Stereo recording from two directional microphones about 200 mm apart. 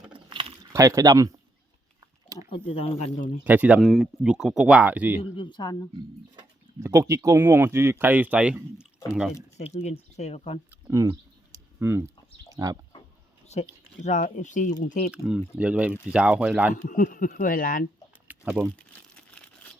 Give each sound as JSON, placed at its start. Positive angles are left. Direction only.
{"t": 0.1, "sound": "a sound", "side_deg": -25}
{"t": 2.5, "sound": "speech", "side_deg": 30}
{"t": 3.4, "sound": "speech", "side_deg": -10}
{"t": 5.4, "sound": "speech", "side_deg": 20}
{"t": 6.8, "sound": "speech", "side_deg": -15}
{"t": 9.3, "sound": "speech", "side_deg": 35}
{"t": 10.7, "sound": "a sound", "side_deg": -15}
{"t": 13.5, "sound": "speech", "side_deg": 35}
{"t": 15.1, "sound": "speech", "side_deg": -5}
{"t": 16.8, "sound": "speech", "side_deg": 40}
{"t": 18.3, "sound": "a sound", "side_deg": -5}